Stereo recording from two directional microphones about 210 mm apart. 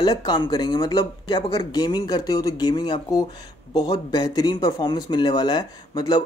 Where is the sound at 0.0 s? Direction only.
20° left (ahead or behind).